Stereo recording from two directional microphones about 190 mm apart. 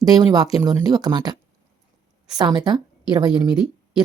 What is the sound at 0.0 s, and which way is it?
Speech, 20° right (ahead or behind).